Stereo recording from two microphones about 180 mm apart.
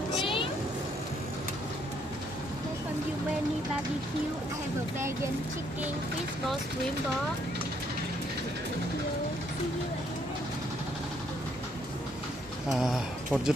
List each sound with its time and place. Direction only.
0.2 s a sound: 30° left (ahead or behind)
4.9 s speech: 15° right (ahead or behind)
12.6 s speech: centre (ahead or behind)